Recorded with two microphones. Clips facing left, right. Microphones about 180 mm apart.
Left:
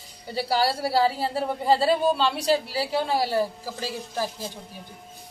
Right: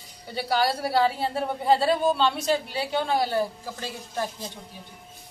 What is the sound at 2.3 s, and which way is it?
Speech, 35° left (ahead or behind).